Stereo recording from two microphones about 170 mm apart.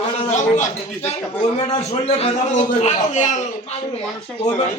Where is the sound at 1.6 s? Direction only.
35° left (ahead or behind).